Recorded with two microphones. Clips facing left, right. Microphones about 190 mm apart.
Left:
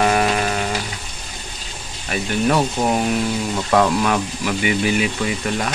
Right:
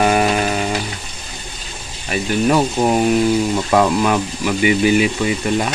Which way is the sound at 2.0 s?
5° right (ahead or behind).